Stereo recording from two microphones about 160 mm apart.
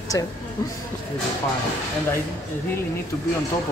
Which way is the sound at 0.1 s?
20° left (ahead or behind).